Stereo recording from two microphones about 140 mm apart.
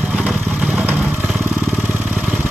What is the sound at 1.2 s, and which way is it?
Vehicle, centre (ahead or behind).